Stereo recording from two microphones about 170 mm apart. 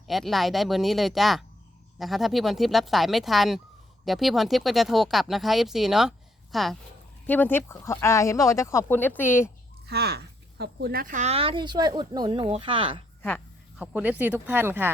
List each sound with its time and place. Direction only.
0.1 s speech: centre (ahead or behind)
7.3 s speech: 10° left (ahead or behind)
9.8 s speech: 70° right (ahead or behind); by 13.0 s 30° right (ahead or behind)
13.7 s speech: 5° right (ahead or behind)